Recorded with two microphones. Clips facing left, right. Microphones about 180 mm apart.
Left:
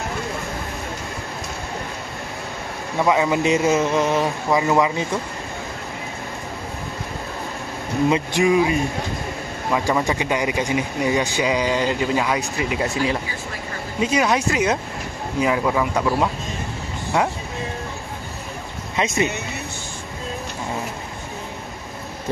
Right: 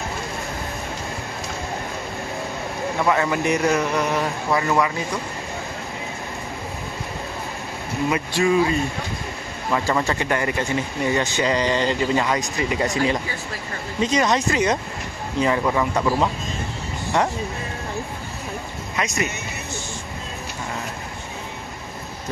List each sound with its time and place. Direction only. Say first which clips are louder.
3.1 s speech: left 3 dB; 15° left (ahead or behind)
8.1 s speech: left 1 dB; 20° left (ahead or behind)
18.9 s speech: left 4 dB; 25° left (ahead or behind)